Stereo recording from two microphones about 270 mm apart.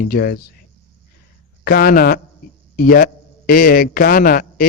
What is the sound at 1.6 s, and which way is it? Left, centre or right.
A man's voice, left.